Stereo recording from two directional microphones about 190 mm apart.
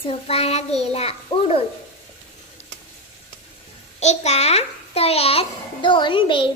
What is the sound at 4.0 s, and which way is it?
A child's voice, 35° left (ahead or behind).